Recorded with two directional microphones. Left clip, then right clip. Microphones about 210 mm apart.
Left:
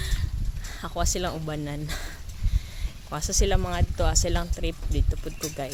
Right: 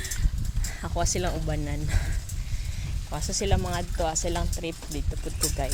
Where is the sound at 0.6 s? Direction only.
15° left (ahead or behind).